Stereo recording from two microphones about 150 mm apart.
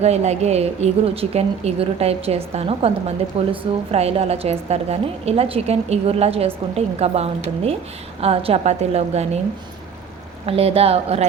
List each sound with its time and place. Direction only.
0.0 s a woman's voice: 45° right (ahead or behind)
10.4 s a woman's voice: 40° right (ahead or behind)